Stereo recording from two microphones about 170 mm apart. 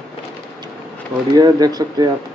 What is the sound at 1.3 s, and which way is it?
Speech, 20° right (ahead or behind).